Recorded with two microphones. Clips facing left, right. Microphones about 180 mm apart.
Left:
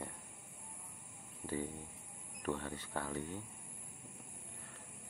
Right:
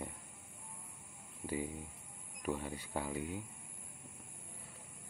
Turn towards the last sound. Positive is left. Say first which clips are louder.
# right 2 dB
turn(degrees=-10)  # may be behind; listen again after turning